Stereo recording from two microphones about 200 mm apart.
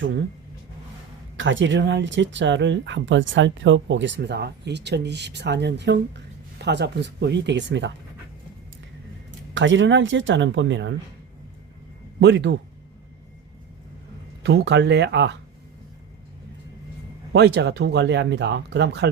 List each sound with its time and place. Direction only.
1.4 s speech: 70° right (ahead or behind)
9.6 s speech: 65° right (ahead or behind)
12.2 s speech: 60° right (ahead or behind)
14.4 s speech: 60° right (ahead or behind)
17.3 s speech: 55° right (ahead or behind)